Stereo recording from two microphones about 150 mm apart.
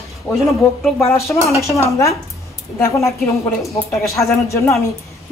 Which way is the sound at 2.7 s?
20° left (ahead or behind).